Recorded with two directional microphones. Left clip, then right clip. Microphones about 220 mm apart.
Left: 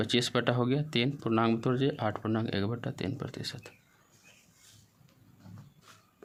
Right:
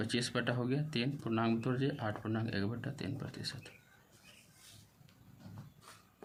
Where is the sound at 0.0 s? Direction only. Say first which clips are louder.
Left 7 dB; 40° left (ahead or behind).